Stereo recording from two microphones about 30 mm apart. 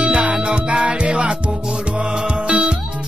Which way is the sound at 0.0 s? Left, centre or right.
Right.